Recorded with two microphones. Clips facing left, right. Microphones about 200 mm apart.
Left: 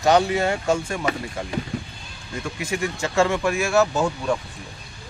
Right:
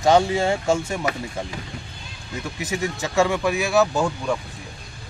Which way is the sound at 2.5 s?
20° right (ahead or behind).